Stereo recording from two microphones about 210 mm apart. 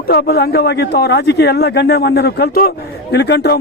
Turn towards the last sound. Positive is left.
turn(degrees=55)  # may be behind; listen again after turning